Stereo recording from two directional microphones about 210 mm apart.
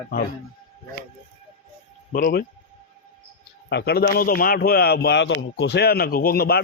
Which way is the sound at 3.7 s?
50° left (ahead or behind).